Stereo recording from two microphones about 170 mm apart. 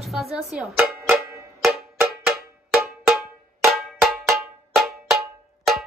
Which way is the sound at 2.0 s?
Centre (ahead or behind).